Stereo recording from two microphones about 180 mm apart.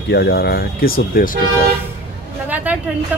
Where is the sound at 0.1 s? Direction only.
60° left (ahead or behind).